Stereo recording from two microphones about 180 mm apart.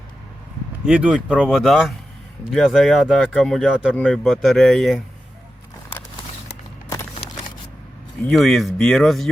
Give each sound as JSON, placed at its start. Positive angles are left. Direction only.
{"t": 0.9, "sound": "speech", "side_deg": -5}
{"t": 8.3, "sound": "speech", "side_deg": 0}